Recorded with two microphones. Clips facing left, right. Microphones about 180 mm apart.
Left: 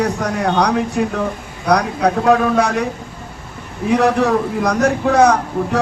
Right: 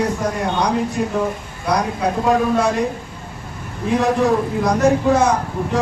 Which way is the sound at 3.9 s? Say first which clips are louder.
Left 2 dB; 75° left (ahead or behind).